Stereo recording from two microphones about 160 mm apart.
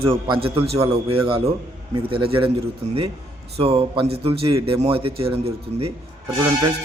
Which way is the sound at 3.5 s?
40° right (ahead or behind).